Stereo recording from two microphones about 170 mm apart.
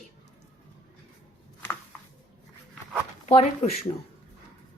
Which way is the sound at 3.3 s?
40° left (ahead or behind).